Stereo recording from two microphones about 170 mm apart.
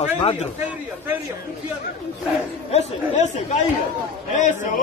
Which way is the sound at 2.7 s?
40° left (ahead or behind).